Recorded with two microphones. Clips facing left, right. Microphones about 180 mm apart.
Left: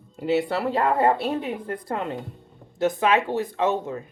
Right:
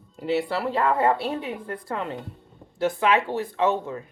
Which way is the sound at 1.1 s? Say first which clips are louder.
Left 2 dB; 20° left (ahead or behind).